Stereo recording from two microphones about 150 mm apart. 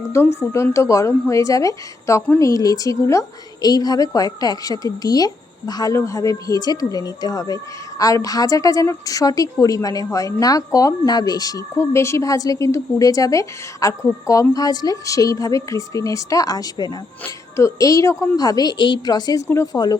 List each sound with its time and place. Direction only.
0.0 s a woman's voice: 15° left (ahead or behind)